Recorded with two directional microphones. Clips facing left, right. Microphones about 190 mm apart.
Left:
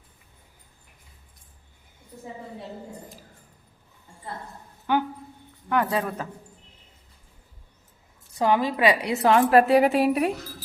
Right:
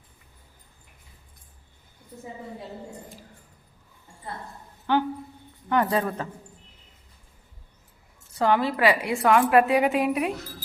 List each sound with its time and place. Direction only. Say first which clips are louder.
4.9 s speech: right 1 dB; 10° left (ahead or behind)
5.6 s speech: right 1 dB; centre (ahead or behind)
8.4 s a woman's voice: even; 15° left (ahead or behind); by 10.3 s 35° left (ahead or behind)